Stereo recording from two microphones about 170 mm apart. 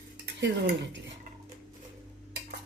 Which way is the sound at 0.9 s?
90° right.